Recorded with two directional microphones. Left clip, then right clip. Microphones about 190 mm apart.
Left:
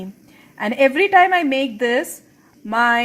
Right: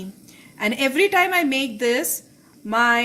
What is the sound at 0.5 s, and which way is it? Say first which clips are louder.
Speech: left 5 dB; 25° left (ahead or behind).